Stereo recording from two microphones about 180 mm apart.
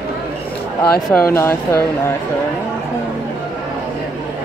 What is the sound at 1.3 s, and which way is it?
Speech, 15° left (ahead or behind).